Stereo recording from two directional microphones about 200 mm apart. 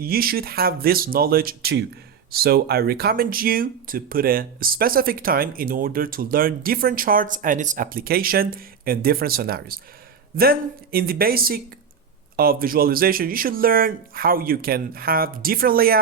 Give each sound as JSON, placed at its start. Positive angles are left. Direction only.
{"t": 0.0, "sound": "speech", "side_deg": -50}